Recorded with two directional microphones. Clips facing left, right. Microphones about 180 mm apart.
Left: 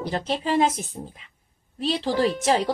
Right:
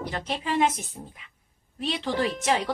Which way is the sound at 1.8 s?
30° left (ahead or behind).